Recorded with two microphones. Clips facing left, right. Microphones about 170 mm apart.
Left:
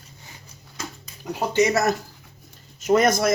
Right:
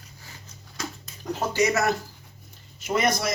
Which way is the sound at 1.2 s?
10° left (ahead or behind).